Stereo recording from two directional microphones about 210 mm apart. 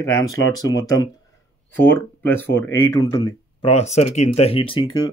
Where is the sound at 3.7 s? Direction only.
30° left (ahead or behind).